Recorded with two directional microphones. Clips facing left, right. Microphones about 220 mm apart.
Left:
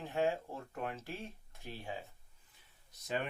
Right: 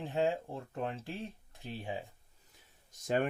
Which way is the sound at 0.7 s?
30° right (ahead or behind).